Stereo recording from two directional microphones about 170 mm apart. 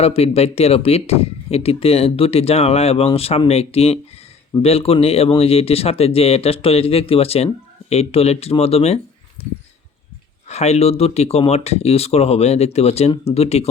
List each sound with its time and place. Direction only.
0.0 s speech: 35° left (ahead or behind)
10.5 s speech: 40° left (ahead or behind)